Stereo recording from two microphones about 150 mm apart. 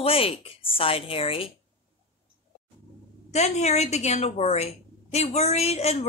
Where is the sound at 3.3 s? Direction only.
50° left (ahead or behind).